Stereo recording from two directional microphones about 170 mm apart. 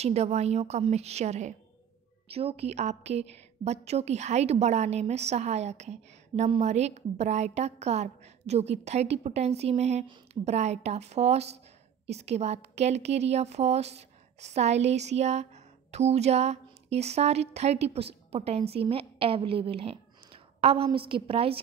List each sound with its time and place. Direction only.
0.0 s a woman's voice: 40° right (ahead or behind)